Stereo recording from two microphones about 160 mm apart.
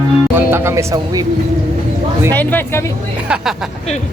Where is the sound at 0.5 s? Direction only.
15° right (ahead or behind).